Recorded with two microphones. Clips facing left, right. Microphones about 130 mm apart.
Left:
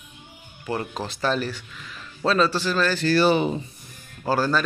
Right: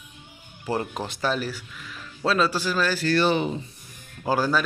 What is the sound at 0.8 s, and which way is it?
A man's voice, 15° right (ahead or behind).